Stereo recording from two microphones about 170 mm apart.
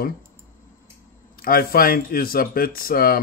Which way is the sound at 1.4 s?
60° left (ahead or behind).